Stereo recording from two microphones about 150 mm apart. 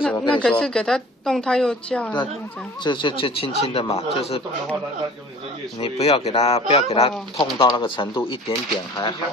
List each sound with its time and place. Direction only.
0.4 s a woman's voice: 5° left (ahead or behind)
2.8 s speech: 30° left (ahead or behind)
5.8 s speech: 40° left (ahead or behind)